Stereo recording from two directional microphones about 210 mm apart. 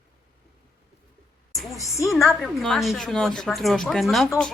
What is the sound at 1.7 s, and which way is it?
Speech, 15° left (ahead or behind).